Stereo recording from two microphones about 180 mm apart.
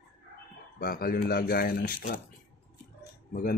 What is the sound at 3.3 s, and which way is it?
Speech, 50° left (ahead or behind).